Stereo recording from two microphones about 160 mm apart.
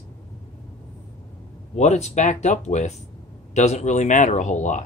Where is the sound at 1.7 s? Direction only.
45° left (ahead or behind).